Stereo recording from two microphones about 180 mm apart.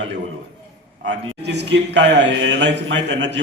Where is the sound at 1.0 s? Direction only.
80° right.